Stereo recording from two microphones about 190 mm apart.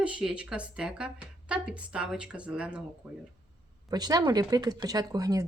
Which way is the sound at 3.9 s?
20° right (ahead or behind).